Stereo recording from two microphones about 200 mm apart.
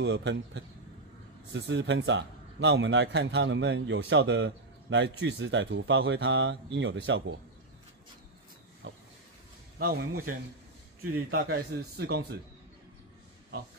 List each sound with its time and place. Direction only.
0.0 s a man's voice: 60° right (ahead or behind)
8.8 s vehicle: 70° right (ahead or behind)
9.8 s speech: 45° right (ahead or behind)
11.5 s speech: 50° right (ahead or behind)